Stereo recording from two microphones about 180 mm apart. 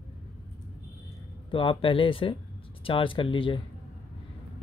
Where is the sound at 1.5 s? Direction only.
30° left (ahead or behind).